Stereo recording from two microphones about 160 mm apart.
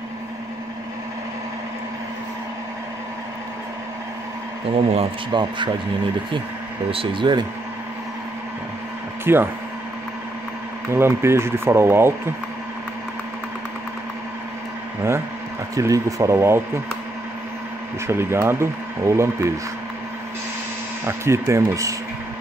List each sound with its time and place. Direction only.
4.7 s speech: 40° right (ahead or behind)
6.9 s speech: 30° right (ahead or behind)
9.2 s speech: 15° right (ahead or behind)
10.9 s speech: 15° right (ahead or behind)
15.7 s speech: 20° right (ahead or behind)
18.0 s speech: 15° right (ahead or behind)
21.0 s speech: 15° right (ahead or behind)